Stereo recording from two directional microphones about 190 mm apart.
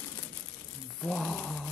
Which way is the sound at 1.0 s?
Centre (ahead or behind).